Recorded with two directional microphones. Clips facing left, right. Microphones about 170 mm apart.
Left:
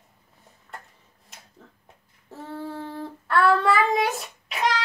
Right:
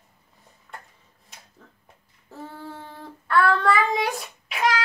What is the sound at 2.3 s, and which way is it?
Child singing, centre (ahead or behind).